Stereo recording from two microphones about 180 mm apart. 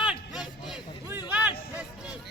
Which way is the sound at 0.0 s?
5° right (ahead or behind).